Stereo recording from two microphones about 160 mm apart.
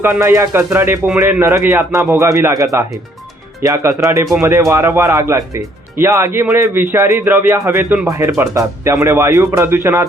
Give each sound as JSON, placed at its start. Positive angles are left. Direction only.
{"t": 0.0, "sound": "speech", "side_deg": -15}